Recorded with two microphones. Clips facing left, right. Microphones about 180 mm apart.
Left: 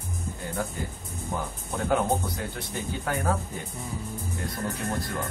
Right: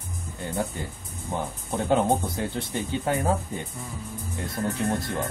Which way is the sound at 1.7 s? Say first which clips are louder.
Right 3 dB; 25° right (ahead or behind).